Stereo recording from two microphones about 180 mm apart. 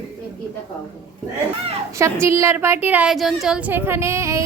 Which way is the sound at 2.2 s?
15° right (ahead or behind).